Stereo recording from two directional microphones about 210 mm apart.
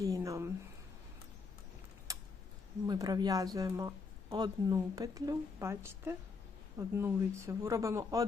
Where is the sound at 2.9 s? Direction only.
20° right (ahead or behind).